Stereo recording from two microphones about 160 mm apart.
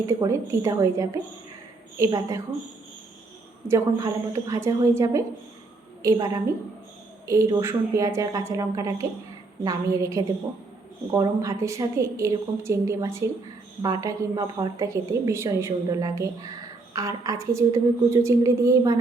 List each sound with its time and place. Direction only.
0.0 s a woman's voice: 20° right (ahead or behind)
3.7 s a woman's voice: 20° right (ahead or behind)